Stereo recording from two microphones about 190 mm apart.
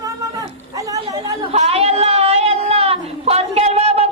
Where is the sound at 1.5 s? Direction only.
35° right (ahead or behind).